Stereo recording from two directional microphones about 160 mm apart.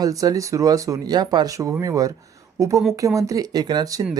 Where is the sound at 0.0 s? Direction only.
20° right (ahead or behind).